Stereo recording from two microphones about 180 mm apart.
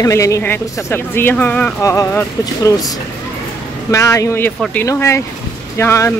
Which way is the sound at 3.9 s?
15° left (ahead or behind).